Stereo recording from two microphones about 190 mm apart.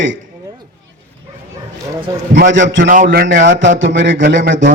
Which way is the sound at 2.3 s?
45° right (ahead or behind).